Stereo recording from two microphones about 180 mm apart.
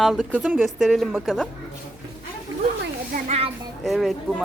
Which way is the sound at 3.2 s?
35° right (ahead or behind).